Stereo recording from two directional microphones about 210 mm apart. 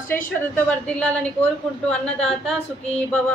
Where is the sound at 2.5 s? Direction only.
5° left (ahead or behind).